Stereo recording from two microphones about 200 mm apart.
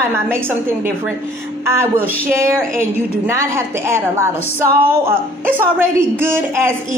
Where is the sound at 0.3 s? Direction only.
10° right (ahead or behind).